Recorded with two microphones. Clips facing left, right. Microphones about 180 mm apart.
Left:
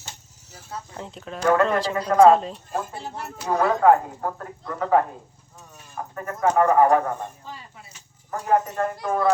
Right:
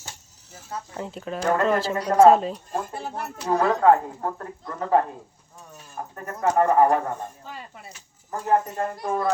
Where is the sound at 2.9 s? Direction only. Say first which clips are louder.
Right 2 dB; 55° right (ahead or behind).